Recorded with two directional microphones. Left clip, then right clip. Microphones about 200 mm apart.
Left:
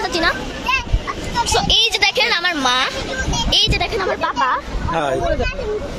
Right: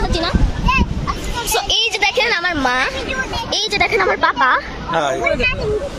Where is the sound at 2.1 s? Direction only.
25° right (ahead or behind).